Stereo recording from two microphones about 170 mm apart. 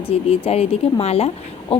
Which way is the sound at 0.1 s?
35° left (ahead or behind).